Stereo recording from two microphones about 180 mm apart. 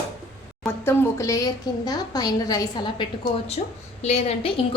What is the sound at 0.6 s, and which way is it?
A woman's voice, 15° left (ahead or behind).